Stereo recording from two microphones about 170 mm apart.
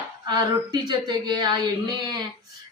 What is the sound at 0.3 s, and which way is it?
Speech, 25° right (ahead or behind).